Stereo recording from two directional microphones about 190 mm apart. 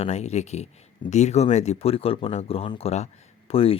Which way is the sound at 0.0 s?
35° left (ahead or behind).